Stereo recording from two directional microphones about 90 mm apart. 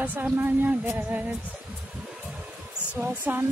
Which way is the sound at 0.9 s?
15° right (ahead or behind).